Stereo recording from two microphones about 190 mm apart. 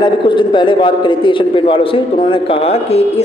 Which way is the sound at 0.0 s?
25° left (ahead or behind).